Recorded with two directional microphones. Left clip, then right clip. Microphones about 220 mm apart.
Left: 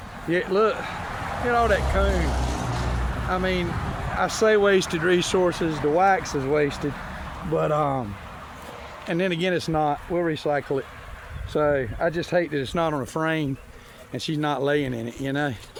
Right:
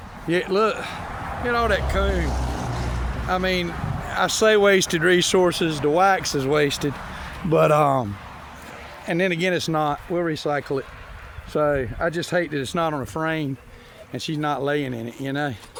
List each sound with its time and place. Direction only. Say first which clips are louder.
0.3 s speech: right 1 dB; 55° right (ahead or behind)
0.9 s vehicle: left 1 dB; 45° left (ahead or behind)
1.5 s speech: even; 25° right (ahead or behind)
2.4 s vehicle: even; centre (ahead or behind)
3.2 s speech: right 3 dB; 30° right (ahead or behind)
7.5 s speech: right 6 dB; 60° right (ahead or behind)
9.0 s speech: right 3 dB; 25° right (ahead or behind)
12.7 s speech: right 1 dB; 10° right (ahead or behind)